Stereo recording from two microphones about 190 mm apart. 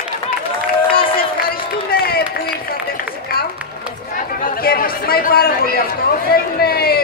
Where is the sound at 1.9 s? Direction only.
50° left (ahead or behind).